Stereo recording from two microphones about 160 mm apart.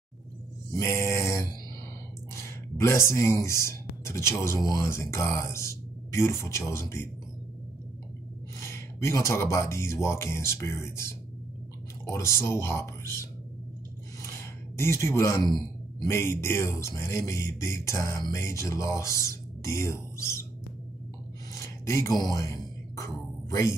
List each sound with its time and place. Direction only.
0.7 s a sound: 15° left (ahead or behind)
2.3 s speech: 15° left (ahead or behind)
8.5 s speech: 15° left (ahead or behind)
14.2 s a sound: 15° left (ahead or behind)
15.5 s speech: 20° left (ahead or behind)
21.5 s music: 20° left (ahead or behind)